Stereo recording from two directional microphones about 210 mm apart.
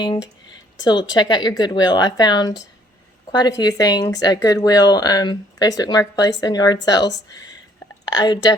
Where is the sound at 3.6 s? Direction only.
15° left (ahead or behind).